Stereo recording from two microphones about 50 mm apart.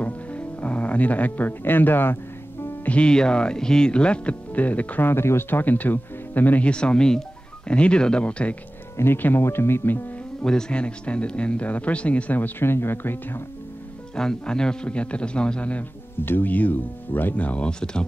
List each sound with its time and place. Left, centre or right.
0.0 s music: left
1.6 s speech: left
2.8 s speech: left
3.1 s speech: centre
5.0 s speech: left
5.5 s speech: left
6.6 s speech: centre
8.9 s speech: left
10.4 s speech: centre
12.4 s speech: left
14.1 s speech: centre
16.3 s speech: left
17.6 s speech: centre